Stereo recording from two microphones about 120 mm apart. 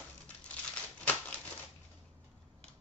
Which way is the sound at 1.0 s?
15° left (ahead or behind).